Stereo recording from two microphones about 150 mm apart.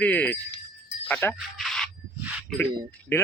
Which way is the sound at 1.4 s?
Centre (ahead or behind).